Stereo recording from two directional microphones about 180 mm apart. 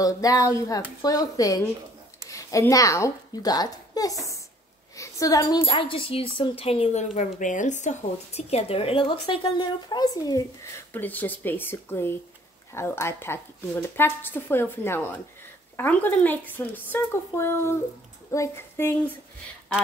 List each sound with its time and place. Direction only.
0.0 s a woman's voice: 20° left (ahead or behind)